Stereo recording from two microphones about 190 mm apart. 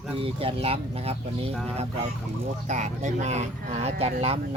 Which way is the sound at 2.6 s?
40° right (ahead or behind).